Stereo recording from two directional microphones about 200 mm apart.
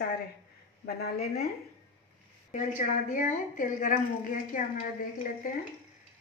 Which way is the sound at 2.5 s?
40° left (ahead or behind).